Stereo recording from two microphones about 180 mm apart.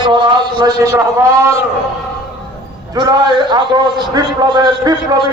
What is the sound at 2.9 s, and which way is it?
A man's voice, 20° right (ahead or behind).